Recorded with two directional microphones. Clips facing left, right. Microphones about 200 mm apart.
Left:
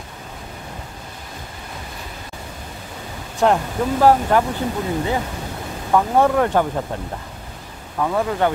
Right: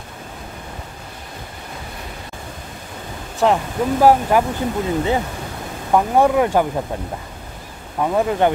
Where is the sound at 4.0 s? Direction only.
10° right (ahead or behind).